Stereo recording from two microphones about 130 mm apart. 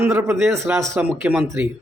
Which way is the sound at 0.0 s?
20° right (ahead or behind).